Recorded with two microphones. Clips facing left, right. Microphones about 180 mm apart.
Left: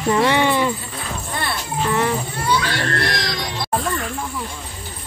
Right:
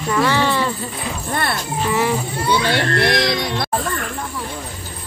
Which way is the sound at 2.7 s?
65° right (ahead or behind).